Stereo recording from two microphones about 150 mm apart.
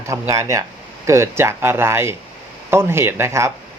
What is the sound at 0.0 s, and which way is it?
Speech, 20° right (ahead or behind).